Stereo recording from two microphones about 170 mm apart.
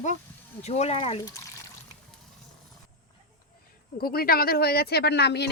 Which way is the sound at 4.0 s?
60° left (ahead or behind).